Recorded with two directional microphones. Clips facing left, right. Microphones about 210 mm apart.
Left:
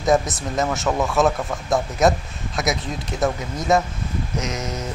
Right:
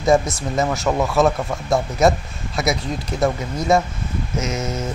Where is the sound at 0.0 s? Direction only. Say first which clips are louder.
Right 2 dB; centre (ahead or behind).